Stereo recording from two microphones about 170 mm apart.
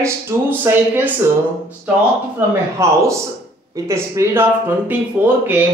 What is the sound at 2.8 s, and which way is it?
Speech, 15° right (ahead or behind).